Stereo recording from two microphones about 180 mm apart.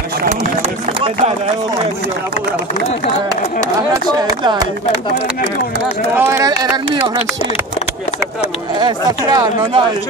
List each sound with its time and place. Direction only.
3.6 s speech: 20° right (ahead or behind)
6.1 s speech: 15° right (ahead or behind)
8.7 s speech: 20° right (ahead or behind)